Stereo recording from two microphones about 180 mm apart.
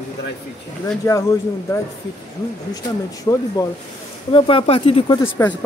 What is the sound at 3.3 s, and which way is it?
Speech, 20° left (ahead or behind).